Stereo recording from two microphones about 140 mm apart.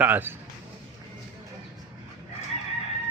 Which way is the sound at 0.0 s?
15° right (ahead or behind).